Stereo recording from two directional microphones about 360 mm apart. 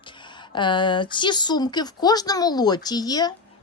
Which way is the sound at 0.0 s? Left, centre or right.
Centre.